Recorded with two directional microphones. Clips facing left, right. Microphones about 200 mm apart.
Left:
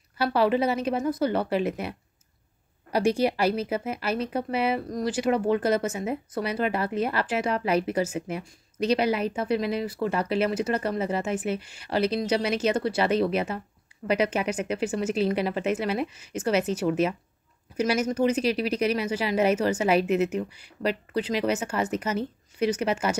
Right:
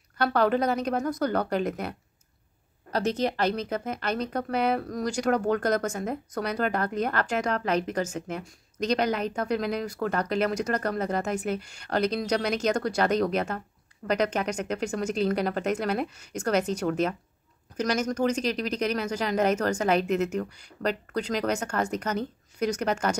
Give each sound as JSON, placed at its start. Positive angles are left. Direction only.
{"t": 0.2, "sound": "speech", "side_deg": 5}